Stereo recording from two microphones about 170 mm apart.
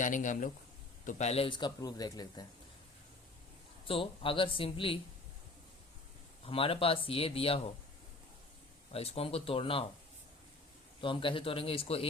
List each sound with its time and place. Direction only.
0.0 s a man's voice: 50° left (ahead or behind); by 2.5 s 25° left (ahead or behind)
3.8 s speech: 30° left (ahead or behind)
6.4 s speech: 35° left (ahead or behind)
8.9 s speech: 35° left (ahead or behind)
11.0 s speech: 30° left (ahead or behind)